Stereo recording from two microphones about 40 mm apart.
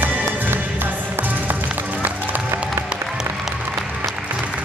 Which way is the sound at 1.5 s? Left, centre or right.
Right.